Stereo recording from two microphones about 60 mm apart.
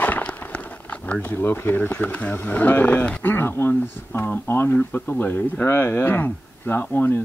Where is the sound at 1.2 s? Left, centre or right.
Left.